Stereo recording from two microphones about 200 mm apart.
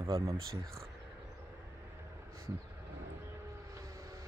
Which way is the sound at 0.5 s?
15° right (ahead or behind).